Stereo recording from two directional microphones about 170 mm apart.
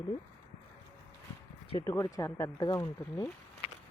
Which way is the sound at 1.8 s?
15° left (ahead or behind).